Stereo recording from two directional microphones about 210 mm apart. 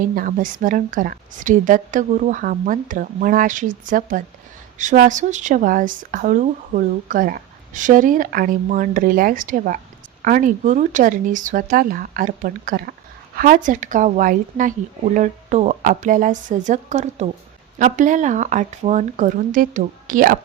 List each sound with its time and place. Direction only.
0.0 s speech: 40° right (ahead or behind)